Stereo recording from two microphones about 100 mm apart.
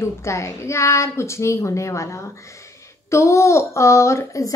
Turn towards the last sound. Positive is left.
turn(degrees=35)  # may be behind; listen again after turning